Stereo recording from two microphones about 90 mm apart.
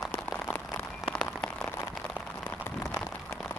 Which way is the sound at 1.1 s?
5° left (ahead or behind).